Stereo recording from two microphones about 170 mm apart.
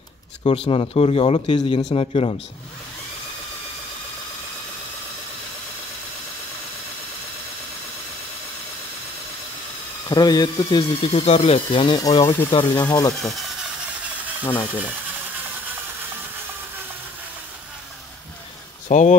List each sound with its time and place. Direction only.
0.4 s speech: 35° left (ahead or behind)
10.0 s speech: 25° left (ahead or behind)
12.4 s speech: 30° left (ahead or behind)
18.9 s speech: 45° left (ahead or behind)